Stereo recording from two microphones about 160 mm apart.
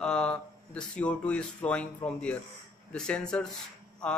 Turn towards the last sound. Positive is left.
turn(degrees=0)  # may be behind; listen again after turning